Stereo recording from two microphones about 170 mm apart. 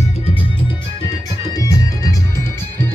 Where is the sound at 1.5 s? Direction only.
20° left (ahead or behind).